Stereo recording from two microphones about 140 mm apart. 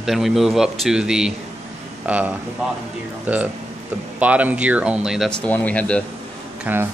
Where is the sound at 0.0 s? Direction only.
Centre (ahead or behind).